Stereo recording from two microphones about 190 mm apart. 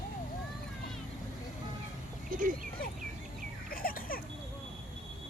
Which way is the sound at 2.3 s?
45° right (ahead or behind).